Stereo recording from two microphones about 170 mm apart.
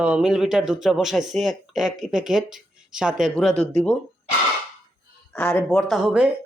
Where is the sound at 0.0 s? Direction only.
5° right (ahead or behind).